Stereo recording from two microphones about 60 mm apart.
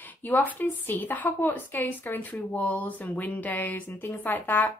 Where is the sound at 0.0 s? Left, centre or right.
Left.